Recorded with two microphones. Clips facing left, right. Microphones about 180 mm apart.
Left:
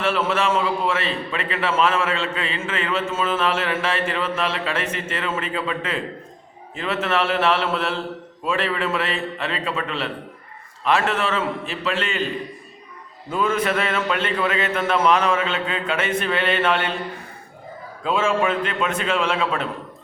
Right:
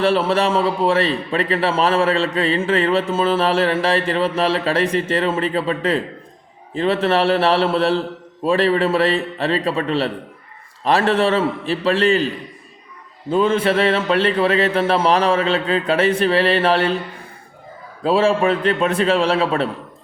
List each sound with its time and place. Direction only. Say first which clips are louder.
0.0 s a man's voice: right 5 dB; 35° right (ahead or behind)
13.3 s a man's voice: right 5 dB; 30° right (ahead or behind)
18.0 s a man's voice: right 5 dB; 35° right (ahead or behind)